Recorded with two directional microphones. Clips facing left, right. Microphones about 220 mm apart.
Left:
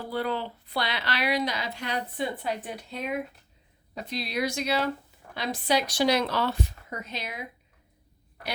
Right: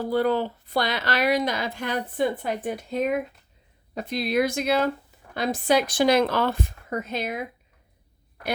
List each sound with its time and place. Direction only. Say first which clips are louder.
0.0 s speech: right 7 dB; 45° right (ahead or behind)